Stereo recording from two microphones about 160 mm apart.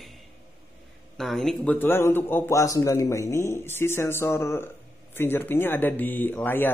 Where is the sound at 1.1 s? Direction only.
Centre (ahead or behind).